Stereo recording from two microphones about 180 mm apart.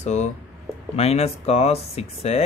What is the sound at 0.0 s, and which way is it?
A man's voice, 40° left (ahead or behind).